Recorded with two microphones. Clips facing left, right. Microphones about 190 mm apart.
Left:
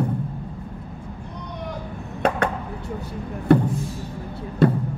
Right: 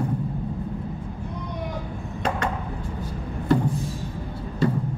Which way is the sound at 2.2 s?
60° left (ahead or behind).